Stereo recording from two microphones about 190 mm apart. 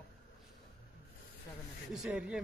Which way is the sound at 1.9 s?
5° right (ahead or behind).